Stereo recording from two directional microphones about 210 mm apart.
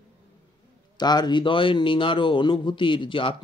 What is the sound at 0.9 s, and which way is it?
A man's voice, 20° left (ahead or behind).